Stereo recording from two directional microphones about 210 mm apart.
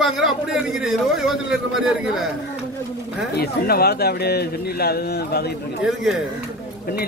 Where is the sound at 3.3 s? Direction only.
50° left (ahead or behind).